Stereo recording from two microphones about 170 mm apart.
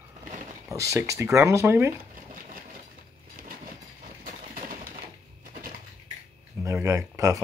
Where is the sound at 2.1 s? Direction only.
55° right (ahead or behind).